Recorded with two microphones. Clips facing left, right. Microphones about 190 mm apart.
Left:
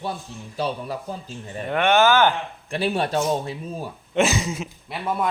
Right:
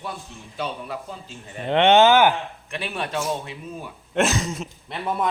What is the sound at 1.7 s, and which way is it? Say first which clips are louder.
Speech: right 3 dB; 25° right (ahead or behind).